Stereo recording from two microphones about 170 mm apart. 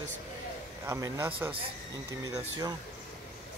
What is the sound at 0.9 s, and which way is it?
Speech, 15° right (ahead or behind).